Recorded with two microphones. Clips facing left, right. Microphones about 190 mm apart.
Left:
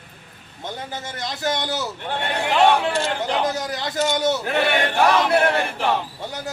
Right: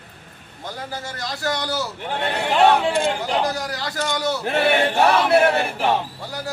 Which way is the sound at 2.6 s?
10° right (ahead or behind).